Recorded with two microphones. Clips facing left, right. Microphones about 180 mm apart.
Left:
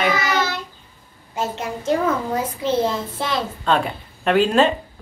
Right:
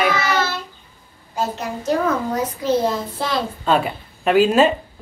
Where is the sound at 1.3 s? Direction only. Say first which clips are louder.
Right 1 dB; 25° left (ahead or behind).